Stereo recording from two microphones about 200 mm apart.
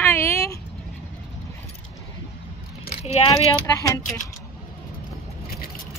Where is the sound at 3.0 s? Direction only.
30° left (ahead or behind).